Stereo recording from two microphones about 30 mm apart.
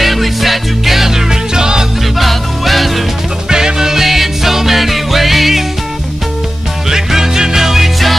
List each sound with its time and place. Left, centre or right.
0.0 s music: centre; by 1.9 s right
2.1 s music: centre
3.4 s music: right; by 5.6 s centre
6.9 s music: centre